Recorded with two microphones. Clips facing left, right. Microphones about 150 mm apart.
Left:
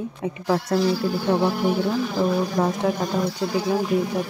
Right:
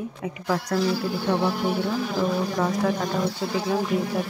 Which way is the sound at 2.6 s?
30° left (ahead or behind).